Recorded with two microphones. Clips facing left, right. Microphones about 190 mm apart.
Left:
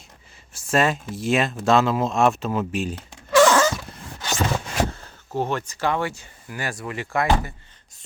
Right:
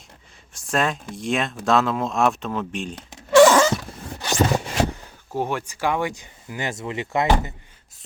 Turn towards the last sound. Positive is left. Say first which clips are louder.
# right 1 dB
turn(degrees=-20)  # may be behind; listen again after turning